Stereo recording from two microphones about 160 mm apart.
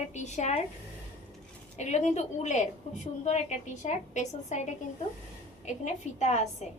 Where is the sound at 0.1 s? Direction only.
45° left (ahead or behind).